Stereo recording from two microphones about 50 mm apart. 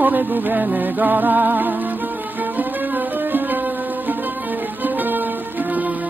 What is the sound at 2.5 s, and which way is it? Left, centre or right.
Music, right.